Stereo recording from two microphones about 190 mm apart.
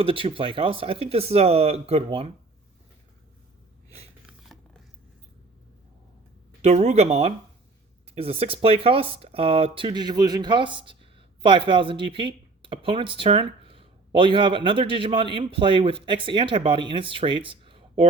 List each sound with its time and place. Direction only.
0.0 s speech: 30° right (ahead or behind)
4.3 s filing: centre (ahead or behind)
6.6 s speech: 35° right (ahead or behind)